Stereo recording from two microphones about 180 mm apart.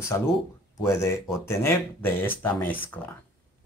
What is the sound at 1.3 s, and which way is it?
Speech, 15° left (ahead or behind).